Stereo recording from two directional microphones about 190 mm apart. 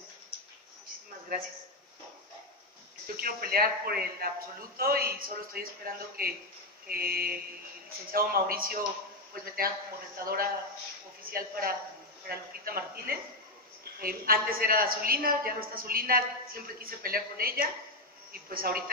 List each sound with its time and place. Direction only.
3.2 s a woman's voice: 50° right (ahead or behind)
10.1 s a woman's voice: 50° right (ahead or behind)